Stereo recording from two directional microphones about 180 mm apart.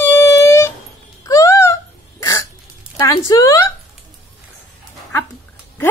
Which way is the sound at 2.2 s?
20° left (ahead or behind).